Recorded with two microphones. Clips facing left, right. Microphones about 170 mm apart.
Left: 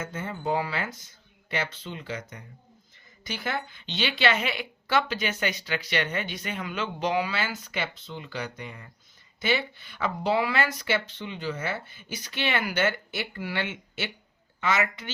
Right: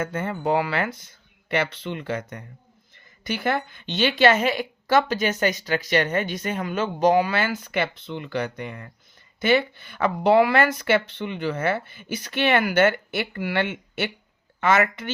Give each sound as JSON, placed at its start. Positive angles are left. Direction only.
{"t": 0.0, "sound": "a woman's voice", "side_deg": -60}